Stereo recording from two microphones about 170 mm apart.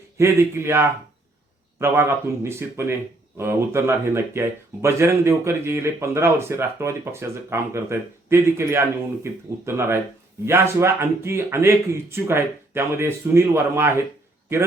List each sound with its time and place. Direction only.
0.2 s speech: 15° right (ahead or behind)